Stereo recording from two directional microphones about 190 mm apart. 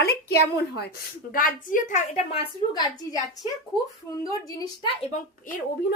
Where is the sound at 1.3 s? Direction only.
45° left (ahead or behind); by 3.1 s 25° left (ahead or behind).